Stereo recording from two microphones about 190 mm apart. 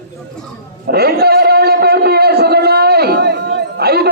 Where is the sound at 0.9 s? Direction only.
55° right (ahead or behind).